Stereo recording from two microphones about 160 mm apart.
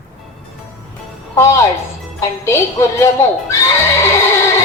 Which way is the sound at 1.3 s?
20° left (ahead or behind).